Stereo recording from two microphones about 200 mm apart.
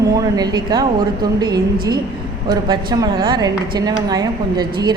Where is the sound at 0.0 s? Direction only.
15° right (ahead or behind).